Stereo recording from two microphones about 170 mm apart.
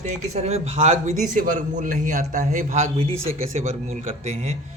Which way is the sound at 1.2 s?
55° right (ahead or behind).